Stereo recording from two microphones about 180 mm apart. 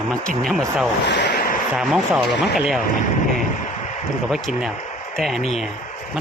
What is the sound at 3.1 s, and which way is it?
Speech, 40° left (ahead or behind).